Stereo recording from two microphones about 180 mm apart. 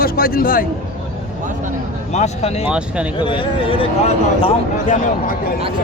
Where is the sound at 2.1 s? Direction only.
35° left (ahead or behind).